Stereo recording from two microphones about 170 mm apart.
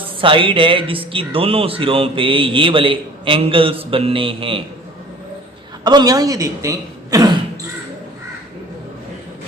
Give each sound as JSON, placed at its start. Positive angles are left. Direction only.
{"t": 0.2, "sound": "speech", "side_deg": -30}
{"t": 5.8, "sound": "speech", "side_deg": -25}